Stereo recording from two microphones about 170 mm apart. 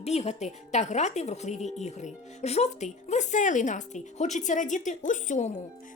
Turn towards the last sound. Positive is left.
turn(degrees=45)  # may be behind; listen again after turning